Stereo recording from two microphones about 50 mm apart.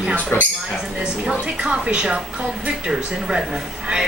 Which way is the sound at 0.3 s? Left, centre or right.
Left.